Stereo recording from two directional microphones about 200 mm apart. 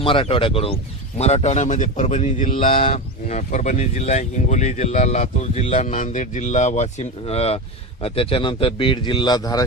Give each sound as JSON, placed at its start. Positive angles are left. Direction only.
{"t": 0.0, "sound": "a man's voice", "side_deg": 25}